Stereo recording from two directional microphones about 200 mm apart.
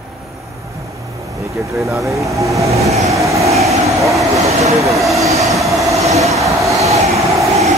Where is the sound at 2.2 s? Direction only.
15° right (ahead or behind).